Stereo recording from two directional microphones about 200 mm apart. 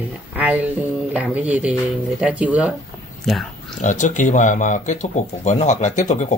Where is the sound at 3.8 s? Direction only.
40° left (ahead or behind).